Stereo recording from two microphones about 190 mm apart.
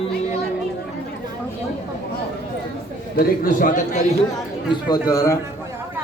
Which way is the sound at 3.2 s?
45° left (ahead or behind).